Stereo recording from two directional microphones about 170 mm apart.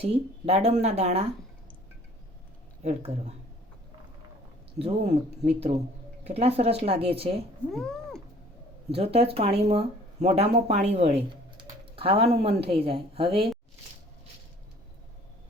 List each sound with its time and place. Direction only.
0.0 s speech: 35° right (ahead or behind)
2.8 s speech: 40° right (ahead or behind)
4.8 s speech: 40° right (ahead or behind)
7.7 s cat: 5° left (ahead or behind)
8.9 s speech: 35° right (ahead or behind)
11.5 s typing: 35° right (ahead or behind)
12.6 s speech: 35° right (ahead or behind)